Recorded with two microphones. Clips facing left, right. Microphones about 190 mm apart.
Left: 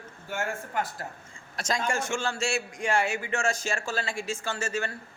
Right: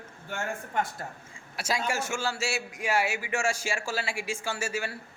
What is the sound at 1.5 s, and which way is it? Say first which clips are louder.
A man's voice: left 1 dB; 10° right (ahead or behind).